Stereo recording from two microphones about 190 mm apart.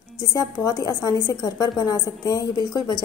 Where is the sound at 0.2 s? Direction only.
15° left (ahead or behind).